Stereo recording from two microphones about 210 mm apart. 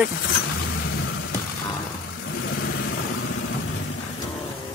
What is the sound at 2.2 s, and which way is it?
Vehicle, 65° left (ahead or behind).